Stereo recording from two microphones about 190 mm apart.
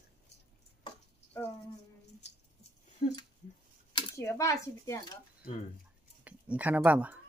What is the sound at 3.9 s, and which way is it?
Speech, 15° left (ahead or behind).